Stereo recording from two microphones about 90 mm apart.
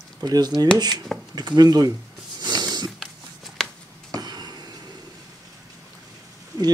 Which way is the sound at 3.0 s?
Centre (ahead or behind).